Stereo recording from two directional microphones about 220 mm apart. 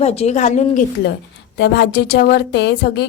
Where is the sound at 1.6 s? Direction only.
50° left (ahead or behind).